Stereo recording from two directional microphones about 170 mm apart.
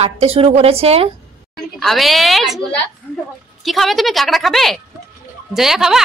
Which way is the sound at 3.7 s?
Centre (ahead or behind).